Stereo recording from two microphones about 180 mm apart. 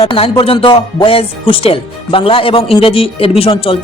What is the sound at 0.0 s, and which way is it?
Speech, 30° left (ahead or behind).